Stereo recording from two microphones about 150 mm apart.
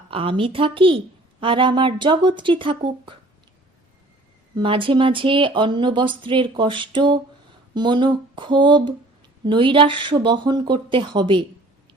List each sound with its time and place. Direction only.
0.1 s speech: 35° right (ahead or behind)
4.5 s speech: 35° right (ahead or behind)